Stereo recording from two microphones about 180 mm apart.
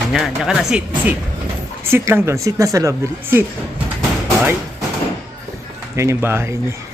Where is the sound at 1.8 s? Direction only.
15° right (ahead or behind).